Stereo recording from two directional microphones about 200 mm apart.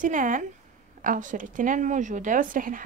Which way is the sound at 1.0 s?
40° right (ahead or behind).